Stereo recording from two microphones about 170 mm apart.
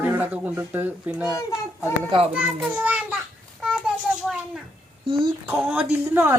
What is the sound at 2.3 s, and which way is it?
Speech, 5° right (ahead or behind).